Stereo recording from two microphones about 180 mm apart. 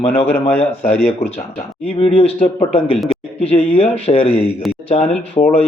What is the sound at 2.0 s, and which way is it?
A man's voice, 30° left (ahead or behind).